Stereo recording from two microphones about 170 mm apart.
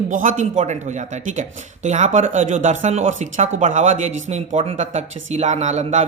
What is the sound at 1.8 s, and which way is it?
Speech, 45° right (ahead or behind).